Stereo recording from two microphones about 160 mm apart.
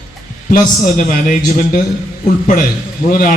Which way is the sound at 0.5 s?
55° left (ahead or behind).